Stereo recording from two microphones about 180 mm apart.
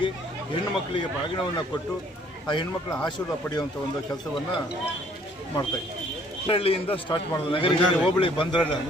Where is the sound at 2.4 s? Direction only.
25° left (ahead or behind).